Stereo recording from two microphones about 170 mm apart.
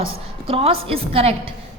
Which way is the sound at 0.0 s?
35° right (ahead or behind).